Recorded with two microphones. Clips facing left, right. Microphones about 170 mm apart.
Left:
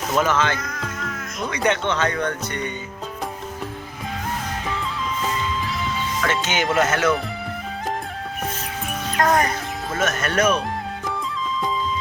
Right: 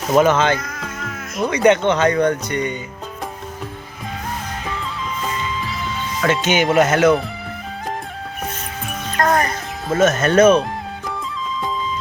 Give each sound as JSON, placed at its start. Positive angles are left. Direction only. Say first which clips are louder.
{"t": 0.1, "sound": "speech", "louder": "right 7 dB", "side_deg": -20}
{"t": 0.6, "sound": "music", "louder": "even", "side_deg": 0}
{"t": 1.5, "sound": "speech", "louder": "right 7 dB", "side_deg": -20}
{"t": 6.4, "sound": "speech", "louder": "right 6 dB", "side_deg": -15}
{"t": 9.1, "sound": "speech", "louder": "right 1 dB", "side_deg": 10}
{"t": 9.9, "sound": "speech", "louder": "right 9 dB", "side_deg": -25}